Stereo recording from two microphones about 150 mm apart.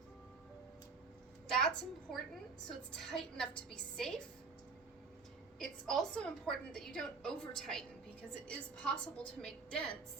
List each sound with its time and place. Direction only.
1.5 s a woman's voice: 5° left (ahead or behind)
5.5 s a woman's voice: 5° left (ahead or behind)